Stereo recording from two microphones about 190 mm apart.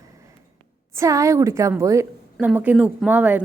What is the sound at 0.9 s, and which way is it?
A woman's voice, 15° right (ahead or behind).